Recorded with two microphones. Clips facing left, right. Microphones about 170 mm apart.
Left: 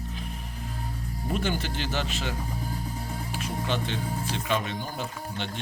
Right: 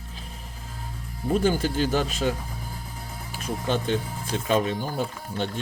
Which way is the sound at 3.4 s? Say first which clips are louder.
Right 5 dB; 45° right (ahead or behind).